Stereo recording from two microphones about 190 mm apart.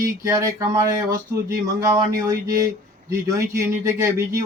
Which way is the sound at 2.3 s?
15° right (ahead or behind).